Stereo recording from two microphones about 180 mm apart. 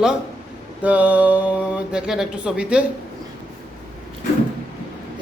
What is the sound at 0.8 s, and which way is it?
Speech, 10° right (ahead or behind).